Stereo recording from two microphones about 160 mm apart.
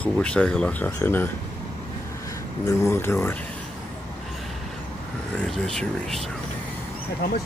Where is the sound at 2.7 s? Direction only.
15° left (ahead or behind).